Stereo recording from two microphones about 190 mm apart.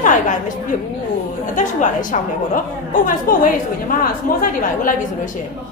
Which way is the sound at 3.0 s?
45° left (ahead or behind).